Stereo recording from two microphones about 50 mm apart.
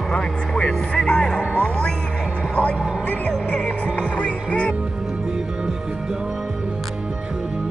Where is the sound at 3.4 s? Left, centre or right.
Left.